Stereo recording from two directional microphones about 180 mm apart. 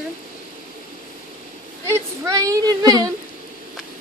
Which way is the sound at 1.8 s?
15° right (ahead or behind).